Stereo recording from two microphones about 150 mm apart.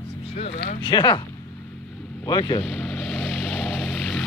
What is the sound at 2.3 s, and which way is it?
Speech, 25° left (ahead or behind).